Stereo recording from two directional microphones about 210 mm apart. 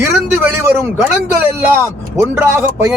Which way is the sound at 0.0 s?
10° right (ahead or behind).